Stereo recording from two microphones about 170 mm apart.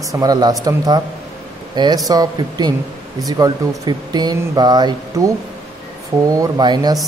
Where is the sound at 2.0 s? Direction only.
20° right (ahead or behind).